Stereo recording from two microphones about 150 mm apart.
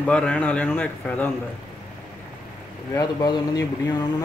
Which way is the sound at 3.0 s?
25° left (ahead or behind).